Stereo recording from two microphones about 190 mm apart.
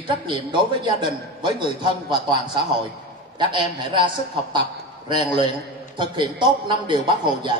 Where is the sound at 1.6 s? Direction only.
25° right (ahead or behind).